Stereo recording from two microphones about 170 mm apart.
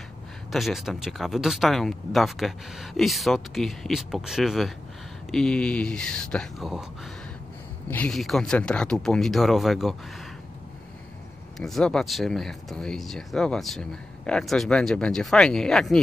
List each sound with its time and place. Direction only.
0.5 s speech: centre (ahead or behind)
7.9 s speech: 5° left (ahead or behind)
11.5 s speech: centre (ahead or behind)